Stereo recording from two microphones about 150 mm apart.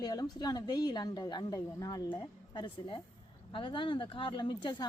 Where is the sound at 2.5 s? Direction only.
35° left (ahead or behind).